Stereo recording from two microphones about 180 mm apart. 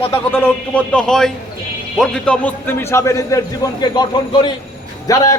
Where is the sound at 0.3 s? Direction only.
10° left (ahead or behind).